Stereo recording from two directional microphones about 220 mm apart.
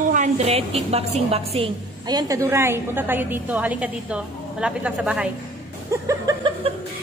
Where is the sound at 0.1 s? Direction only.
30° right (ahead or behind).